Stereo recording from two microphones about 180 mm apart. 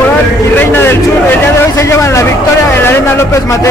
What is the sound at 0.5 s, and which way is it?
Speech, 10° left (ahead or behind).